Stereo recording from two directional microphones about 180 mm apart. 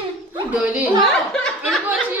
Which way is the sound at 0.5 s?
10° right (ahead or behind).